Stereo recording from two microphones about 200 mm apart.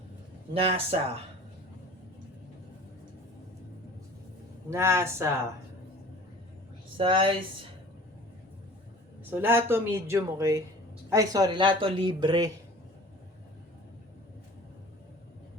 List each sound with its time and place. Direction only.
0.5 s speech: 30° right (ahead or behind)
4.7 s speech: 15° right (ahead or behind)
6.9 s speech: 25° right (ahead or behind)
9.3 s speech: 10° right (ahead or behind)